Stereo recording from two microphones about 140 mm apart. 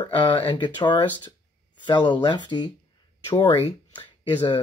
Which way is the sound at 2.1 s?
35° left (ahead or behind).